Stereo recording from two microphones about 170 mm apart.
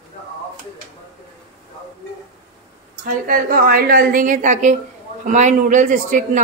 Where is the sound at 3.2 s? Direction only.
50° right (ahead or behind).